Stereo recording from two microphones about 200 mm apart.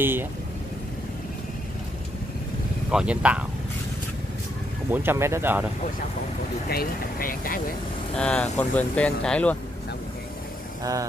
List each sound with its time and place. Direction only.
0.0 s speech: 10° right (ahead or behind)
2.9 s speech: 5° right (ahead or behind)
4.9 s speech: 10° right (ahead or behind)
6.7 s speech: 45° left (ahead or behind)
8.2 s speech: 5° left (ahead or behind)
10.8 s speech: 15° right (ahead or behind)